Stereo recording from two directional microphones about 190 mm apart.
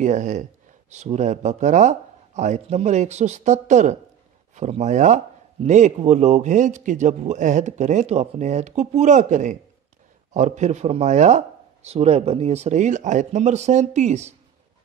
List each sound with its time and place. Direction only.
0.0 s a man's voice: 40° right (ahead or behind)